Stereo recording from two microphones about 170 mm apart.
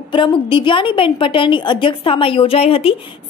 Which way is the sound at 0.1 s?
30° left (ahead or behind).